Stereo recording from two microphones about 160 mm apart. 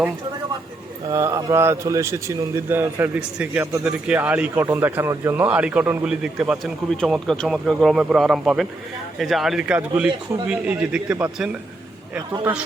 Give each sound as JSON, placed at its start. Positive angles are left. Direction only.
{"t": 1.1, "sound": "a man's voice", "side_deg": -20}